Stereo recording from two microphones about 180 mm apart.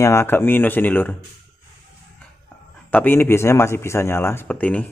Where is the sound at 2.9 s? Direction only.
10° left (ahead or behind).